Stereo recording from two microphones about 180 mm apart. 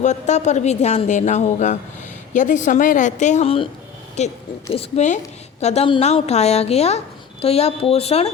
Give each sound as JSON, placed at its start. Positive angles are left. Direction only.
{"t": 0.0, "sound": "a woman's voice", "side_deg": 40}